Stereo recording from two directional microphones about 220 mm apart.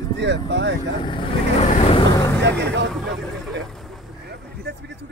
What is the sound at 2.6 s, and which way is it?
Speech, 50° right (ahead or behind).